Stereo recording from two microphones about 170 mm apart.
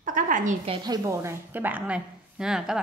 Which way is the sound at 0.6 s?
25° right (ahead or behind).